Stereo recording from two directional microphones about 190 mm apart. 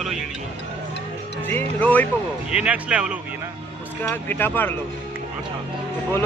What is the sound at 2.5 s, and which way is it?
Speech, 5° right (ahead or behind).